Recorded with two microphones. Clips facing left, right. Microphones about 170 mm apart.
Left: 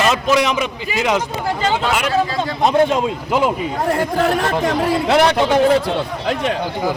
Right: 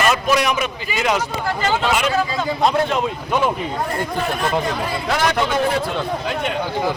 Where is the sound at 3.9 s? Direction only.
85° left.